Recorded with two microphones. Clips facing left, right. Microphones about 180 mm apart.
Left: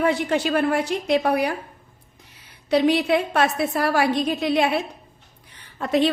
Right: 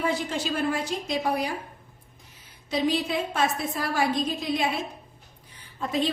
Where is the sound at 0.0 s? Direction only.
65° left (ahead or behind).